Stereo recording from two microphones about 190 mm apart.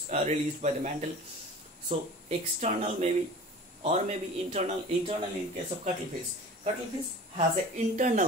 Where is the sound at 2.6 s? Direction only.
35° right (ahead or behind).